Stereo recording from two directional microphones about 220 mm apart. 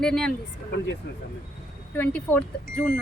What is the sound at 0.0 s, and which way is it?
Speech, 5° left (ahead or behind).